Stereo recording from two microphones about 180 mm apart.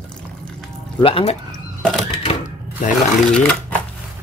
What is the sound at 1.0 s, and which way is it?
Speech, 35° left (ahead or behind).